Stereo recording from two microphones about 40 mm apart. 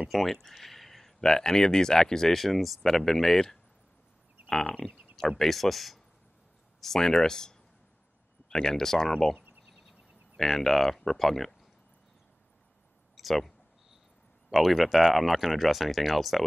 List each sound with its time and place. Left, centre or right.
0.1 s speech: centre
1.2 s speech: centre
2.3 s speech: centre
4.5 s a sound: centre
5.4 s speech: centre
9.8 s a sound: centre
11.1 s speech: centre
13.1 s a sound: centre
14.5 s speech: centre